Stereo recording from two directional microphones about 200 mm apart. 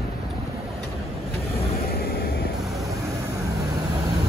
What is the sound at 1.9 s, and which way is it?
Vehicle, 50° left (ahead or behind).